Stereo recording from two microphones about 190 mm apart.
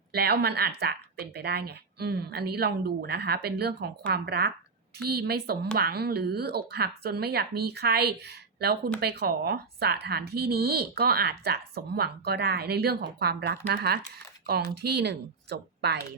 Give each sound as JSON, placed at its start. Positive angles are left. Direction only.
{"t": 0.1, "sound": "speech", "side_deg": -55}